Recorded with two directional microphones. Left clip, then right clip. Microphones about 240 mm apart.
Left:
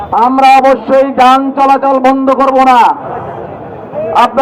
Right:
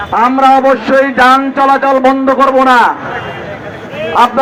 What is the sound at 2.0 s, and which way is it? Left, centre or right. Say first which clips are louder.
Speech: even; right.